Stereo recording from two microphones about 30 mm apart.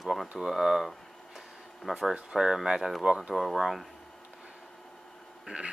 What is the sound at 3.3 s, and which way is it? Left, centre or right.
Speech, centre.